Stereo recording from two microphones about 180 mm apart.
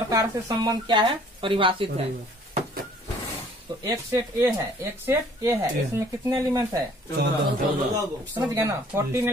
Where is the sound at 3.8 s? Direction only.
15° right (ahead or behind).